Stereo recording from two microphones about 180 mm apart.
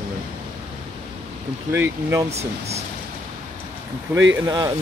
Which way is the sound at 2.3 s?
35° right (ahead or behind).